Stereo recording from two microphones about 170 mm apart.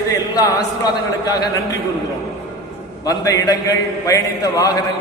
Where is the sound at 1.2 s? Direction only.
20° left (ahead or behind).